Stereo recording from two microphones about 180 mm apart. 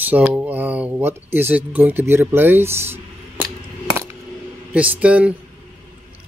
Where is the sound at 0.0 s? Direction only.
10° right (ahead or behind).